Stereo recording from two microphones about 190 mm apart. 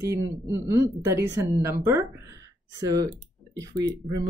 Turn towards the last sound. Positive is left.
turn(degrees=-15)  # may be behind; listen again after turning